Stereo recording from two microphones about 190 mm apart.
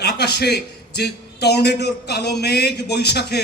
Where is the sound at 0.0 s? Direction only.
60° left (ahead or behind).